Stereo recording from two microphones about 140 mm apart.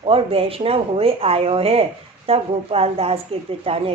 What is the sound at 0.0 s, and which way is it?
A woman's voice, 45° right (ahead or behind).